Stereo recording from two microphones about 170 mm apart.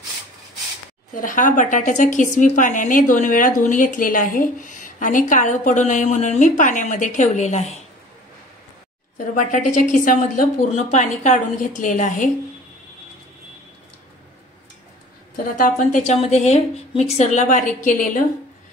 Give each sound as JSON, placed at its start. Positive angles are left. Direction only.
{"t": 1.1, "sound": "a woman's voice", "side_deg": 50}
{"t": 9.3, "sound": "a woman's voice", "side_deg": 50}
{"t": 15.3, "sound": "a woman's voice", "side_deg": 50}